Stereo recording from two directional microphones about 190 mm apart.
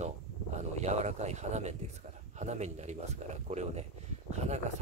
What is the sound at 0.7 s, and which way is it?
Speech, 35° right (ahead or behind).